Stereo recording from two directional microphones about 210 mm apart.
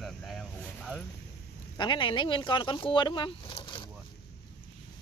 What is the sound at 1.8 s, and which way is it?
Speech, 20° left (ahead or behind).